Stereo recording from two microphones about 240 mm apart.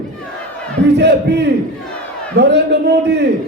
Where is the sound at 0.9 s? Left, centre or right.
Right.